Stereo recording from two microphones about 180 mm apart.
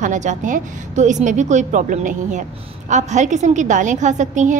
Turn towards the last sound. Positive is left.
turn(degrees=-45)  # may be behind; listen again after turning